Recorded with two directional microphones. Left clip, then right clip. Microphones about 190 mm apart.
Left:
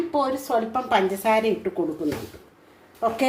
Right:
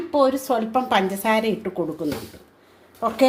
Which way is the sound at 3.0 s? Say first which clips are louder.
Even; 30° right (ahead or behind).